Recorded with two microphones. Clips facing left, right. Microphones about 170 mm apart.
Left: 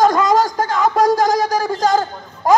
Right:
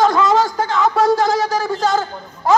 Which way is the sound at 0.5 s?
45° left (ahead or behind).